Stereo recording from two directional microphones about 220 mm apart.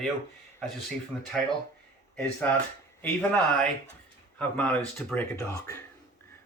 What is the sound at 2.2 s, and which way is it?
Speech, 5° left (ahead or behind).